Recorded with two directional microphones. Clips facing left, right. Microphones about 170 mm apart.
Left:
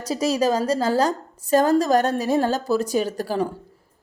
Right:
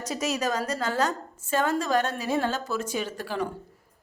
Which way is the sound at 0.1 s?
30° left (ahead or behind).